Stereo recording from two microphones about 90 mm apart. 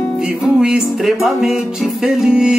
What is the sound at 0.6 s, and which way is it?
Music, 10° right (ahead or behind).